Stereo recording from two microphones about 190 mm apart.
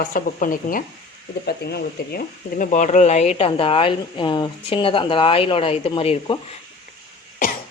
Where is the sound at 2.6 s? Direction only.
40° left (ahead or behind).